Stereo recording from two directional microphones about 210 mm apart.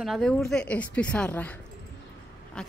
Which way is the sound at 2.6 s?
5° left (ahead or behind).